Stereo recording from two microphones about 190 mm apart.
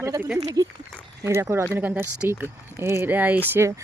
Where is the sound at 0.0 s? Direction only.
10° right (ahead or behind).